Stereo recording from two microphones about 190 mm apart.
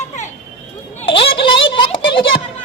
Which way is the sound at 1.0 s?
25° left (ahead or behind).